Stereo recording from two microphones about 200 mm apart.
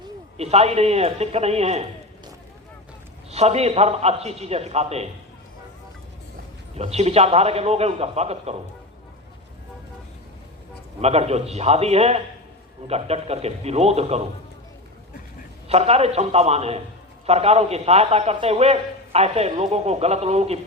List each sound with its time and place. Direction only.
0.3 s a man's voice: 30° right (ahead or behind)
3.3 s a man's voice: 30° right (ahead or behind)
6.7 s a man's voice: 30° right (ahead or behind)
11.0 s a man's voice: 30° right (ahead or behind)
15.7 s a man's voice: 30° right (ahead or behind)